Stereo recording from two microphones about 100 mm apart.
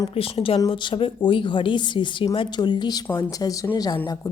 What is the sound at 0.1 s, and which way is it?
A woman's voice, 70° left (ahead or behind).